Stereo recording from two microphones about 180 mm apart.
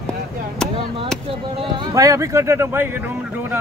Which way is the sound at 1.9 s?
20° right (ahead or behind).